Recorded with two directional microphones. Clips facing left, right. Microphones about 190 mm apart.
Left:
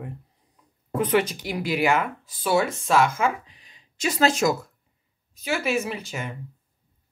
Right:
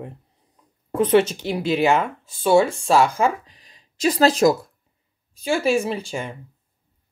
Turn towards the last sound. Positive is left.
turn(degrees=-30)  # may be behind; listen again after turning